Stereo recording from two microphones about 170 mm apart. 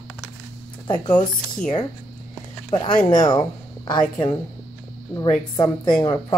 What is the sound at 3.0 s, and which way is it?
Speech, 25° left (ahead or behind).